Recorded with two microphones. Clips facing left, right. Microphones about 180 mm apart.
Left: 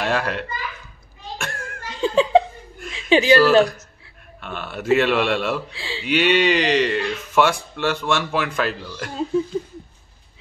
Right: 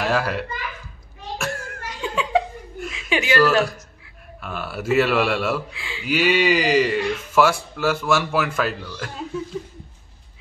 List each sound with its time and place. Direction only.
0.0 s a child's voice: 5° right (ahead or behind)
1.4 s children playing: 5° right (ahead or behind)
1.9 s laughter: 30° left (ahead or behind)
3.1 s speech: 30° left (ahead or behind)
4.4 s speech: 5° right (ahead or behind)
5.7 s speech: 30° left (ahead or behind)
6.0 s speech: 5° right (ahead or behind)